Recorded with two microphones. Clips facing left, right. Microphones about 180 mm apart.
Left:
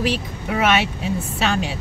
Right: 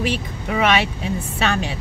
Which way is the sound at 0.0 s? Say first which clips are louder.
Left 1 dB; centre (ahead or behind).